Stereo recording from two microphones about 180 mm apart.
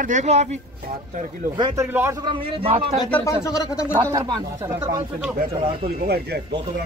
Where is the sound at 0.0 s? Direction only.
40° right (ahead or behind).